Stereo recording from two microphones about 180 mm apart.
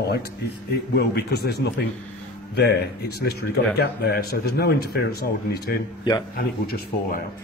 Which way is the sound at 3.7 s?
60° left (ahead or behind).